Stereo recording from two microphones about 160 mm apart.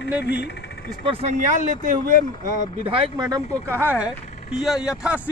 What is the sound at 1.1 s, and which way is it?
Speech, 40° right (ahead or behind).